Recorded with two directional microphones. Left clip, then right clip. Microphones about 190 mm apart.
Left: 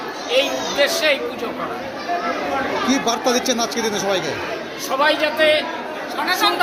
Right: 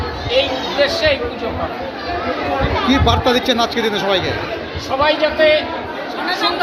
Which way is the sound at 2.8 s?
10° left (ahead or behind).